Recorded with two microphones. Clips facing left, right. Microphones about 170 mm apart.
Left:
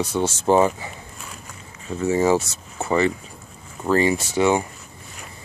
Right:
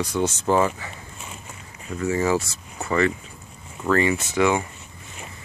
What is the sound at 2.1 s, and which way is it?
Speech, 25° left (ahead or behind).